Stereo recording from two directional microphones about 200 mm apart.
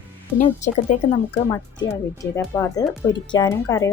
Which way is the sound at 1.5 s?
15° left (ahead or behind).